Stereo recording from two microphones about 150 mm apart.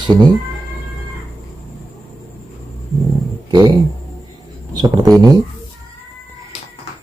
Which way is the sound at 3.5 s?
30° right (ahead or behind).